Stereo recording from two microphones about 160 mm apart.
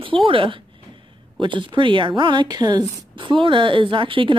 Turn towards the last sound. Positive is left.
turn(degrees=-30)  # may be behind; listen again after turning